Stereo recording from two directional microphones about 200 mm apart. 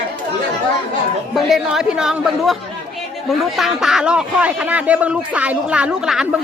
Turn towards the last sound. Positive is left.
turn(degrees=-5)  # may be behind; listen again after turning